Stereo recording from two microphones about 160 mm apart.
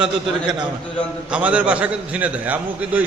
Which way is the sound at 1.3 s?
5° right (ahead or behind).